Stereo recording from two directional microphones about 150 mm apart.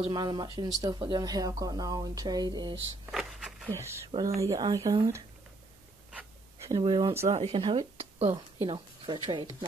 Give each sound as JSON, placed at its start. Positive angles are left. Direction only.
{"t": 0.1, "sound": "speech", "side_deg": -30}
{"t": 3.1, "sound": "a sound", "side_deg": 0}
{"t": 3.6, "sound": "speech", "side_deg": -20}
{"t": 6.8, "sound": "speech", "side_deg": -30}
{"t": 7.2, "sound": "speech", "side_deg": -45}